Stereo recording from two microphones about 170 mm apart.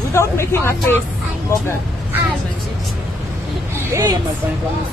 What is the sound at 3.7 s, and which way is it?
Vehicle, 15° right (ahead or behind).